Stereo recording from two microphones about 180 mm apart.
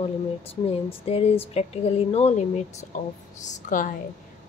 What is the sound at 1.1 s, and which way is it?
A woman's voice, 35° left (ahead or behind).